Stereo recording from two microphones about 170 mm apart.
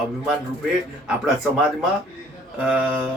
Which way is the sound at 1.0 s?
5° right (ahead or behind).